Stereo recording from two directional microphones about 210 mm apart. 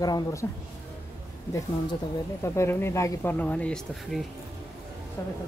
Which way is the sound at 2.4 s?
10° left (ahead or behind).